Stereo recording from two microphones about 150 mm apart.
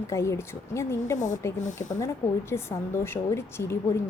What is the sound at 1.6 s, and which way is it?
Speech, 55° left (ahead or behind).